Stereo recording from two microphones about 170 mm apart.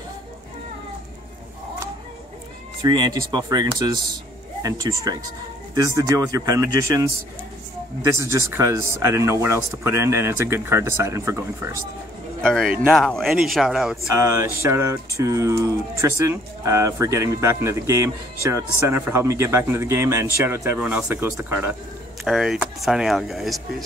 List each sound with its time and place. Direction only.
2.8 s speech: 25° right (ahead or behind)
12.4 s speech: 5° left (ahead or behind)
14.1 s speech: 15° right (ahead or behind)
22.2 s speech: centre (ahead or behind)